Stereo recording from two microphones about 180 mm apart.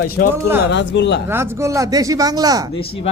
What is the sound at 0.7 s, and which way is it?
Speech, 80° left.